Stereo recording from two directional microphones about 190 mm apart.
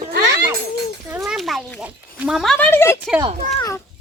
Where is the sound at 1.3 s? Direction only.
Centre (ahead or behind).